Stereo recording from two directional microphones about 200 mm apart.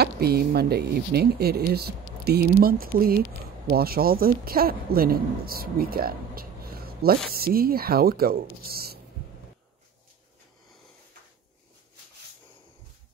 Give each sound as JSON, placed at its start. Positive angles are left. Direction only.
{"t": 0.0, "sound": "speech", "side_deg": -55}